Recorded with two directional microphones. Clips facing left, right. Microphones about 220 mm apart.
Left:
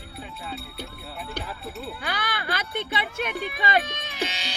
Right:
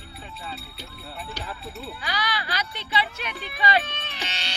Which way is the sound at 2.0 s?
55° left (ahead or behind).